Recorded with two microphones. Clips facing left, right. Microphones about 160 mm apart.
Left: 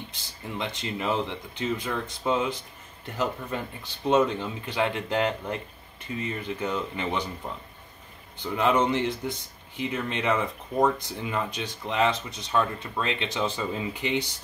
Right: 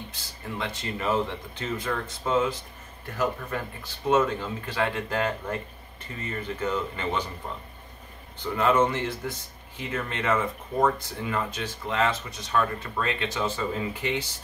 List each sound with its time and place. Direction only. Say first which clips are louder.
0.1 s speech: even; 20° left (ahead or behind)
8.5 s speech: even; 15° left (ahead or behind)